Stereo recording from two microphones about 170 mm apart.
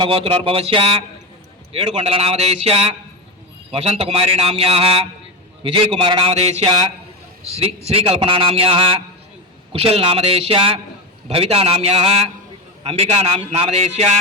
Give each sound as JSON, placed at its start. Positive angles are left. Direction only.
{"t": 0.0, "sound": "a man's voice", "side_deg": -35}